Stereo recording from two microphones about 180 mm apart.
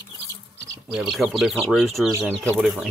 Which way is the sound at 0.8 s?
Centre (ahead or behind).